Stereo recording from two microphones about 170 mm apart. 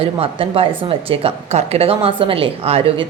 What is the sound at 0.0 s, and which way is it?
A woman's voice, 35° right (ahead or behind).